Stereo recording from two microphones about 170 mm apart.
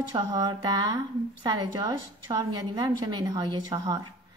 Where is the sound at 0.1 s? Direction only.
25° right (ahead or behind).